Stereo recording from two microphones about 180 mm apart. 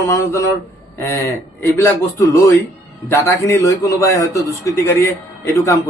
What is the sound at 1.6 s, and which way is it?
A man's voice, 15° left (ahead or behind).